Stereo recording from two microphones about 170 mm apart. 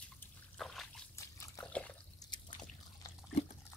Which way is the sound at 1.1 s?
15° left (ahead or behind).